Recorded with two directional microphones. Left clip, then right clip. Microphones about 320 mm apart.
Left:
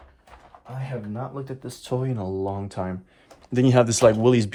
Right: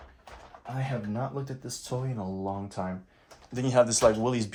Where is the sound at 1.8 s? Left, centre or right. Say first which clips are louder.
Left 8 dB; left.